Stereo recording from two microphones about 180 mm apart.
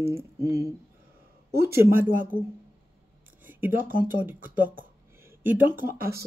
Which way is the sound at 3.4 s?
10° right (ahead or behind).